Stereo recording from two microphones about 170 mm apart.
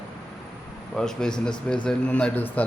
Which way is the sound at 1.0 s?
5° left (ahead or behind).